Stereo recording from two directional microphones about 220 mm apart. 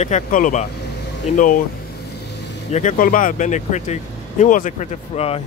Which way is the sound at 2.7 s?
35° left (ahead or behind).